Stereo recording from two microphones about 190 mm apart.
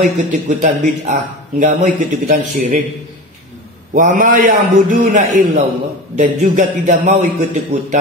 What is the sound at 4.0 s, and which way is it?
A man's voice, 45° right (ahead or behind).